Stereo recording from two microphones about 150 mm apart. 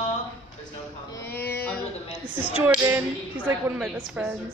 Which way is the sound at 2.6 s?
15° right (ahead or behind).